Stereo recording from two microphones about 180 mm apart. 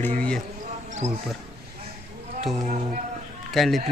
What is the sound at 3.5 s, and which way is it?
Speech, centre (ahead or behind).